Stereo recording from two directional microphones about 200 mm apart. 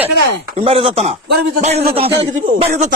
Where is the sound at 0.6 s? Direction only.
30° right (ahead or behind).